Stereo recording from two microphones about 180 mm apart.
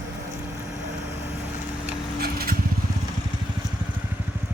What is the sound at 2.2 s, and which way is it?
Vehicle, 55° right (ahead or behind).